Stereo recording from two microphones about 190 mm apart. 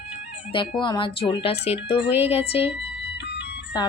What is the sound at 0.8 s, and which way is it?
Speech, 25° left (ahead or behind).